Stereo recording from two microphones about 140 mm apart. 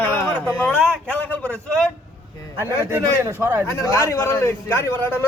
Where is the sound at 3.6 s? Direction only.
20° left (ahead or behind).